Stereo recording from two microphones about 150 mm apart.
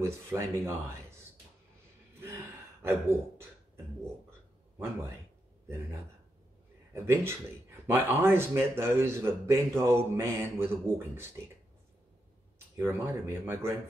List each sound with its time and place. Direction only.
0.0 s a man's voice: 20° right (ahead or behind)
2.8 s speech: 15° right (ahead or behind)
6.9 s a man's voice: 20° right (ahead or behind)
12.7 s a man's voice: 15° right (ahead or behind)